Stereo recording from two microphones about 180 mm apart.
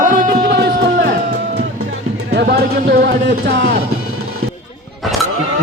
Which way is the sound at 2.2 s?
65° right (ahead or behind).